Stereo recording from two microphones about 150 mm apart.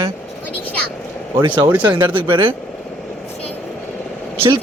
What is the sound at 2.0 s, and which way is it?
Speech, 35° right (ahead or behind).